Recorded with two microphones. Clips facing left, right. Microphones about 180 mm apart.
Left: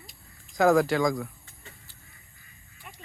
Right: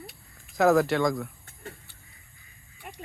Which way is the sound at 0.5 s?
Centre (ahead or behind).